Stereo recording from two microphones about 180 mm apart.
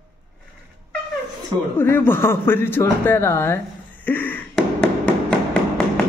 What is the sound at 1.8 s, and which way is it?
Speech, 10° left (ahead or behind).